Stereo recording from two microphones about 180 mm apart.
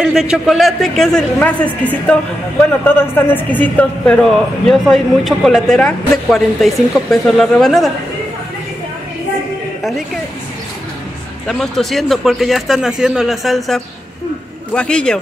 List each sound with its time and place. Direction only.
0.0 s a woman's voice: 5° right (ahead or behind)
9.8 s a woman's voice: centre (ahead or behind)
11.4 s a woman's voice: centre (ahead or behind)